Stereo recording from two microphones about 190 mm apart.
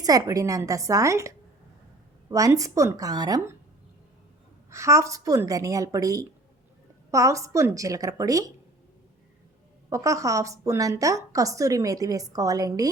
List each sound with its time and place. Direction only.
0.0 s a woman's voice: 20° right (ahead or behind)
4.7 s a woman's voice: 15° right (ahead or behind)
9.9 s a woman's voice: 15° right (ahead or behind)